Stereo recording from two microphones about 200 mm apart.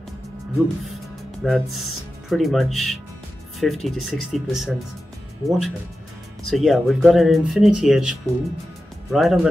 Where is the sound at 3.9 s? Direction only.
90° left.